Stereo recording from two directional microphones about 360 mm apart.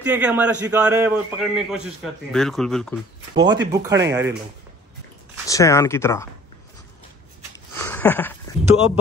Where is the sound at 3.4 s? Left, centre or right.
Centre.